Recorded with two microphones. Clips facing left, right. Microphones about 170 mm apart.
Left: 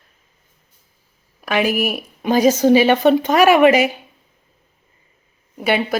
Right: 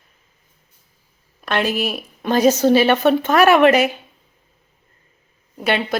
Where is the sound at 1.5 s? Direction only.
10° left (ahead or behind).